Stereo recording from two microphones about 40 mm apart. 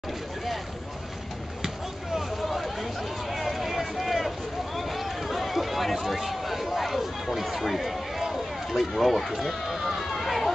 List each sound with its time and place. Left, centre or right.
2.1 s a sound: centre
3.3 s vehicle: centre
4.7 s run: centre
7.3 s speech: centre